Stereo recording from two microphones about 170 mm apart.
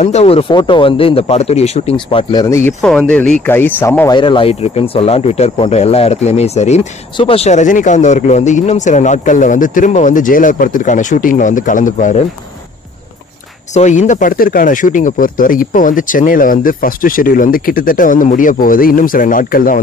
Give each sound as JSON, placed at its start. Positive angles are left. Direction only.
{"t": 0.0, "sound": "speech", "side_deg": 40}
{"t": 2.8, "sound": "speech", "side_deg": 5}
{"t": 4.1, "sound": "speech", "side_deg": 30}
{"t": 13.7, "sound": "speech", "side_deg": 45}